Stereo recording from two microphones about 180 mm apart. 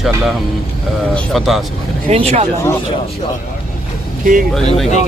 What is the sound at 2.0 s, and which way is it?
Speech, 40° right (ahead or behind).